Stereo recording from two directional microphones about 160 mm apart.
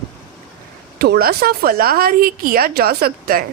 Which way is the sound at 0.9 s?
80° right.